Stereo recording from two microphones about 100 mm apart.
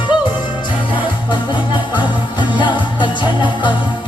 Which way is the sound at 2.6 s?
50° left (ahead or behind).